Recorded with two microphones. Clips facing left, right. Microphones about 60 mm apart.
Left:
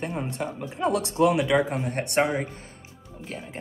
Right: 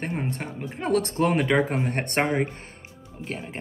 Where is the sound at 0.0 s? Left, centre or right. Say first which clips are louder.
Even; right.